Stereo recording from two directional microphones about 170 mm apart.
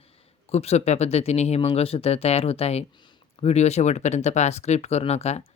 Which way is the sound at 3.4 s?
40° left (ahead or behind).